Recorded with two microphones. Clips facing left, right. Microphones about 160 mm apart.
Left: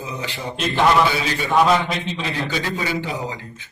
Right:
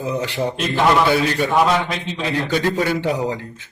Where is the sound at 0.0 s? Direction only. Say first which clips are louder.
Right 7 dB; 70° right (ahead or behind).